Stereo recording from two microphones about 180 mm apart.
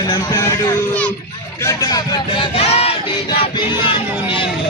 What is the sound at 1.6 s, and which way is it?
Speech, 20° left (ahead or behind).